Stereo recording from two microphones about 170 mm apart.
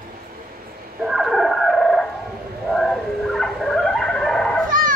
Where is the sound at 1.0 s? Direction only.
Centre (ahead or behind).